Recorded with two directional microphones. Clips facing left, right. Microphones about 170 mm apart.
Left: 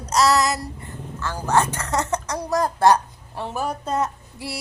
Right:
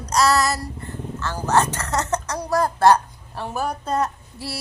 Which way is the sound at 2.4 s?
20° left (ahead or behind).